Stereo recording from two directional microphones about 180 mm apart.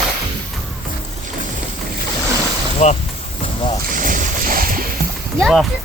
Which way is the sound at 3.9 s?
45° right (ahead or behind).